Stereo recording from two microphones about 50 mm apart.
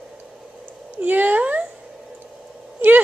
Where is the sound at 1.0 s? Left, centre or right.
Right.